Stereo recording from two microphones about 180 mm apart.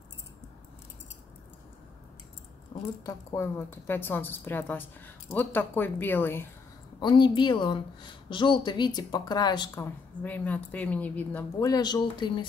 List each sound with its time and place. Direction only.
3.1 s a woman's voice: 15° left (ahead or behind)
7.0 s a woman's voice: 25° left (ahead or behind)
10.2 s a woman's voice: 10° left (ahead or behind)
11.6 s a woman's voice: 20° left (ahead or behind)